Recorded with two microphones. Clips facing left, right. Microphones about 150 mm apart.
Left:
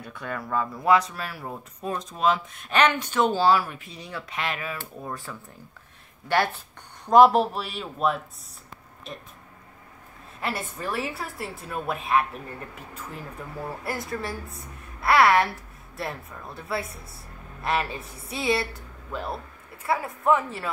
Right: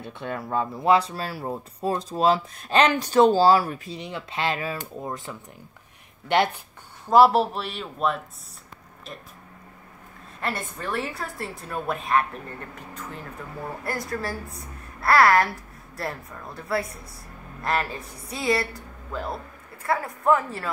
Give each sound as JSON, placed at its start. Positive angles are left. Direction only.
{"t": 0.0, "sound": "speech", "side_deg": -25}
{"t": 4.0, "sound": "speech", "side_deg": -25}
{"t": 4.7, "sound": "speech", "side_deg": -20}
{"t": 7.1, "sound": "a woman's voice", "side_deg": -5}
{"t": 10.4, "sound": "a woman's voice", "side_deg": 5}
{"t": 13.8, "sound": "a woman's voice", "side_deg": 0}
{"t": 19.9, "sound": "a woman's voice", "side_deg": 0}